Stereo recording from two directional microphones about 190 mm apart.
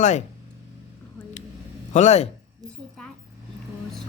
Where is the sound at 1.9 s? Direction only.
35° left (ahead or behind).